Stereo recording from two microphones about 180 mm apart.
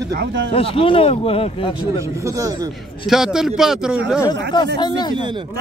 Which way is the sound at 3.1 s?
5° right (ahead or behind).